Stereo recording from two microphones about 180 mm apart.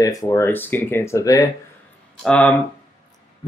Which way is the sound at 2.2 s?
5° left (ahead or behind).